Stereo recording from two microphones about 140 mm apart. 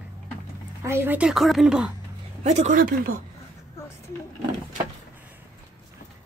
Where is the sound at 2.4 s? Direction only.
55° right (ahead or behind); by 3.1 s 85° right.